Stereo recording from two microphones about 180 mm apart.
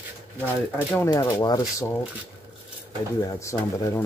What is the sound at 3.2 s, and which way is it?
Speech, 15° left (ahead or behind).